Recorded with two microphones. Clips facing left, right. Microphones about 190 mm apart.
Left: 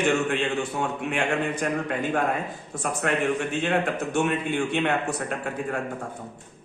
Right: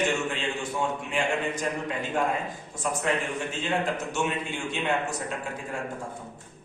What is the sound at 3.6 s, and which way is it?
Speech, 60° left (ahead or behind).